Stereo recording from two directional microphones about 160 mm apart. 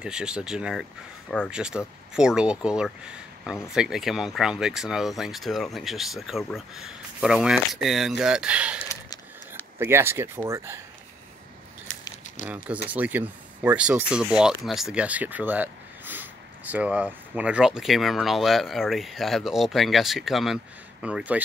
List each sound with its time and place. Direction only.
0.0 s speech: 5° right (ahead or behind)
12.9 s speech: 10° right (ahead or behind)